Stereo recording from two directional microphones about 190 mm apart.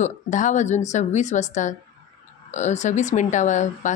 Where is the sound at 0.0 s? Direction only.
40° left (ahead or behind).